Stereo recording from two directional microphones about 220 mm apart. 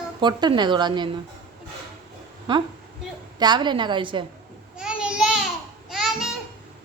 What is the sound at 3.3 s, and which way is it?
Speech, 20° right (ahead or behind).